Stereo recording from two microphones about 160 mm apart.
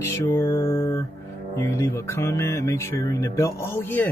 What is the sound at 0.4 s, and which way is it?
Speech, 25° left (ahead or behind).